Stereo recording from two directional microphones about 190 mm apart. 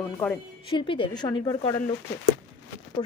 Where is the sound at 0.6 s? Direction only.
25° left (ahead or behind).